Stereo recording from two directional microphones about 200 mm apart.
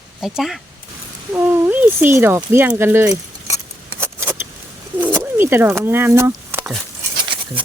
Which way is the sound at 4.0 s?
10° right (ahead or behind).